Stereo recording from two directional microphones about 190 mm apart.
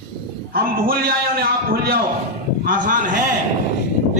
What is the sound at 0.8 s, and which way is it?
A man's voice, 50° right (ahead or behind).